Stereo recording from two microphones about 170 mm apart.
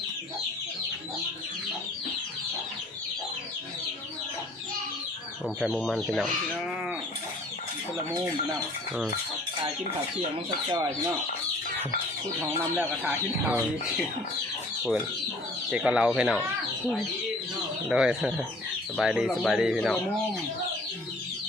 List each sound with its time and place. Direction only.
5.5 s speech: centre (ahead or behind)
10.7 s speech: 20° right (ahead or behind)
12.4 s speech: 15° right (ahead or behind)
15.7 s speech: 5° right (ahead or behind)
17.8 s speech: 5° right (ahead or behind)